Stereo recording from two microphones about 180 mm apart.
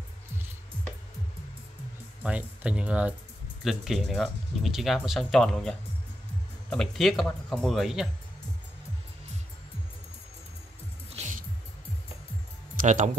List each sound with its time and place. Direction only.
2.2 s speech: 5° right (ahead or behind)
11.1 s music: 40° right (ahead or behind)
12.8 s speech: 40° right (ahead or behind)